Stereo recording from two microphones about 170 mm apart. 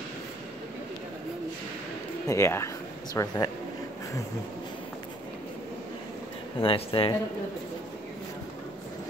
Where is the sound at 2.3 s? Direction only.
15° left (ahead or behind).